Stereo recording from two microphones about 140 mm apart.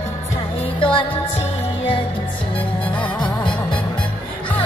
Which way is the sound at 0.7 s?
40° left (ahead or behind).